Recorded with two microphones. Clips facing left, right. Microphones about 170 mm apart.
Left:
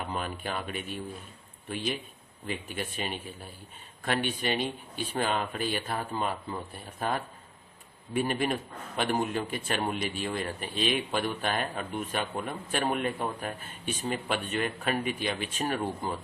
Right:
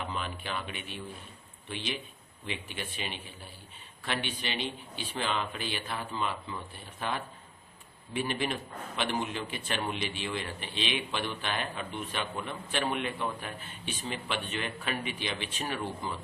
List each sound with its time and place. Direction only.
0.1 s a man's voice: 45° left (ahead or behind)